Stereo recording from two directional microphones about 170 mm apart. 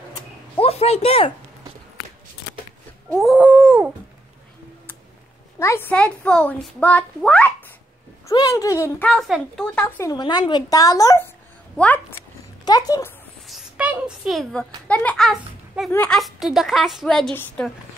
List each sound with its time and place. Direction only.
0.1 s a sound: 35° left (ahead or behind)
3.1 s a woman's voice: centre (ahead or behind)
5.6 s speech: 15° left (ahead or behind)
8.3 s a woman's voice: 20° left (ahead or behind)
10.1 s a woman's voice: 25° left (ahead or behind)
11.7 s speech: 10° left (ahead or behind)
12.6 s a woman's voice: 20° left (ahead or behind)
13.5 s a child's voice: 5° right (ahead or behind)